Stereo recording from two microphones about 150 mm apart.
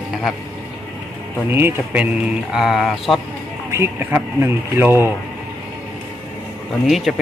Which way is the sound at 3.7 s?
15° right (ahead or behind).